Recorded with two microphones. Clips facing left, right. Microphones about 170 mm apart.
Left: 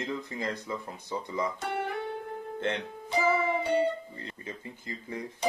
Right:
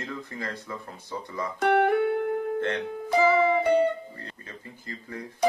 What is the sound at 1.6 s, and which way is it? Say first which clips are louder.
Music: right 11 dB; 70° right (ahead or behind).